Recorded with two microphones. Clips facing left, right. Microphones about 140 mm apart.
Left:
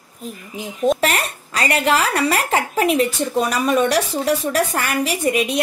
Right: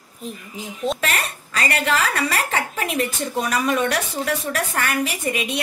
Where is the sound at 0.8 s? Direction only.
35° left (ahead or behind).